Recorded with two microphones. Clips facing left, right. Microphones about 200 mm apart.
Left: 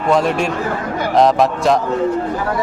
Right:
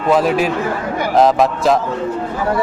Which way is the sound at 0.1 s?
5° right (ahead or behind).